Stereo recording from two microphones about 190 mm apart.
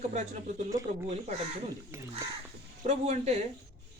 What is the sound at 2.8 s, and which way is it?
Speech, 35° right (ahead or behind).